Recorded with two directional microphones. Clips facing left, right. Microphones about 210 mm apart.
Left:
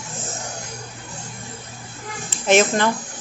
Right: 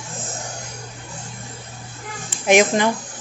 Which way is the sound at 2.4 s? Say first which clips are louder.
Right 1 dB; 15° right (ahead or behind).